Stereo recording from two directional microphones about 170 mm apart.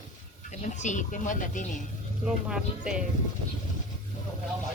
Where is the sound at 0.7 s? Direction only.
45° left (ahead or behind).